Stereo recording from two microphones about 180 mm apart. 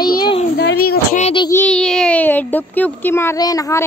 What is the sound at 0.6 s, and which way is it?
Speech, 60° left (ahead or behind).